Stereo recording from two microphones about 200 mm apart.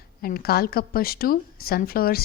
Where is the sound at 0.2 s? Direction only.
50° left (ahead or behind).